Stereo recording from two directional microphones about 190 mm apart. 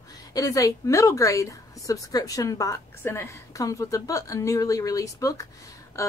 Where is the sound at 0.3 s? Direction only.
15° left (ahead or behind).